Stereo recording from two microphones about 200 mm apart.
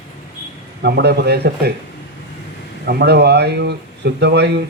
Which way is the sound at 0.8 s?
55° right (ahead or behind).